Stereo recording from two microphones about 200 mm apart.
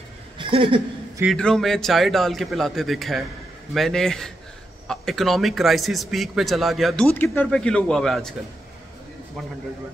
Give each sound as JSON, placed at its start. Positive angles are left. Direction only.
{"t": 0.4, "sound": "speech", "side_deg": -25}
{"t": 1.2, "sound": "a man's voice", "side_deg": 5}